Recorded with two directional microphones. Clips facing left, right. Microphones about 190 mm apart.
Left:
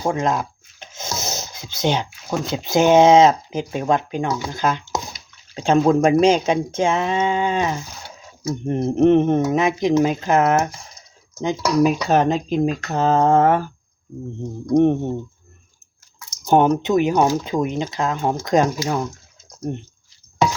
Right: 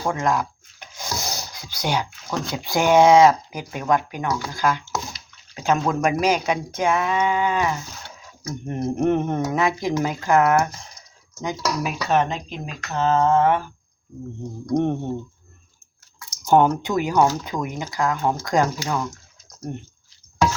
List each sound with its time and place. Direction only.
0.0 s a sound: 20° left (ahead or behind)
2.5 s speech: 20° left (ahead or behind)
11.3 s speech: 35° left (ahead or behind)
14.7 s speech: 15° left (ahead or behind)
16.5 s speech: 20° left (ahead or behind)